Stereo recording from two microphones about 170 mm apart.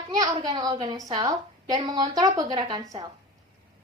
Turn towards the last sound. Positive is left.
turn(degrees=-20)  # may be behind; listen again after turning